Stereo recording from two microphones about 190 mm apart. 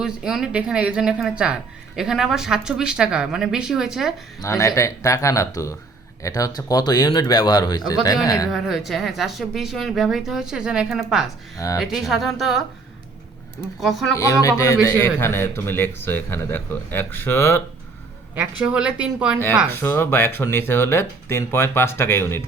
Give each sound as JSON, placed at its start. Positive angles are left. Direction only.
{"t": 0.0, "sound": "a woman's voice", "side_deg": 0}
{"t": 4.4, "sound": "a man's voice", "side_deg": 15}
{"t": 8.4, "sound": "a woman's voice", "side_deg": 0}
{"t": 11.5, "sound": "a man's voice", "side_deg": 15}
{"t": 11.8, "sound": "a woman's voice", "side_deg": 0}
{"t": 13.7, "sound": "a woman's voice", "side_deg": 0}
{"t": 14.2, "sound": "a man's voice", "side_deg": 15}
{"t": 18.3, "sound": "a woman's voice", "side_deg": -5}
{"t": 19.7, "sound": "a man's voice", "side_deg": 10}